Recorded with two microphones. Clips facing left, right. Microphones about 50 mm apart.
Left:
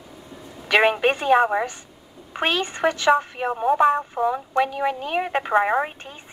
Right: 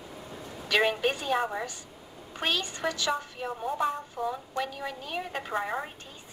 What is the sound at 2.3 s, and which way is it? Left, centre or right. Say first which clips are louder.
A woman's voice: left 8 dB; left.